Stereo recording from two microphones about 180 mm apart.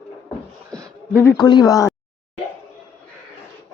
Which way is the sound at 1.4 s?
20° left (ahead or behind).